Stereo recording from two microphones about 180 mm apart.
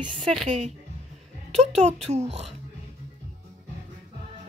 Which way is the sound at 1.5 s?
40° right (ahead or behind).